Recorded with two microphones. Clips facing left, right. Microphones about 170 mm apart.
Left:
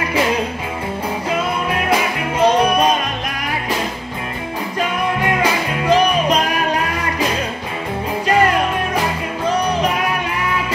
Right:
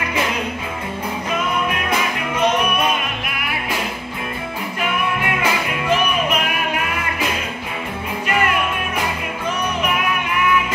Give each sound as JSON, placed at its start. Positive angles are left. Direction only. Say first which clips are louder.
{"t": 1.7, "sound": "music", "louder": "left 4 dB", "side_deg": 30}
{"t": 5.4, "sound": "music", "louder": "left 3 dB", "side_deg": 35}
{"t": 8.3, "sound": "music", "louder": "left 5 dB", "side_deg": 35}